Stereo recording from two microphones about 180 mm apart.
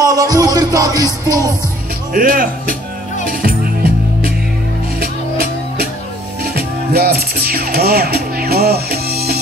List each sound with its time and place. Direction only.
0.0 s music: 20° right (ahead or behind)
2.1 s speech: 55° right (ahead or behind)
3.3 s music: 55° right (ahead or behind)